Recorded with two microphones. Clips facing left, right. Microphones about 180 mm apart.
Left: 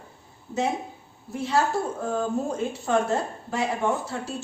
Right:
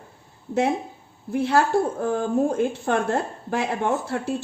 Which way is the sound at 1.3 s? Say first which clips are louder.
Right 5 dB; 60° right (ahead or behind).